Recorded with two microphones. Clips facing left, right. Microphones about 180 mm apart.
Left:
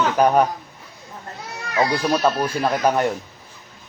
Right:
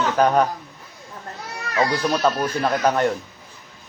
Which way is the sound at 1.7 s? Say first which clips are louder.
Left 1 dB; 10° left (ahead or behind).